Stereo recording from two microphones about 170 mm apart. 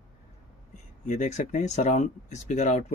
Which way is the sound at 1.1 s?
45° left (ahead or behind).